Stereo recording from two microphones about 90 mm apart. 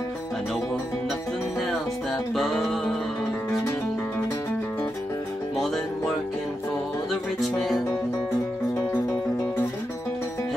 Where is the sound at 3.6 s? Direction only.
20° left (ahead or behind).